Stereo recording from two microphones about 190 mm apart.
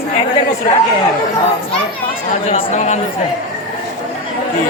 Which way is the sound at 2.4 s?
35° left (ahead or behind).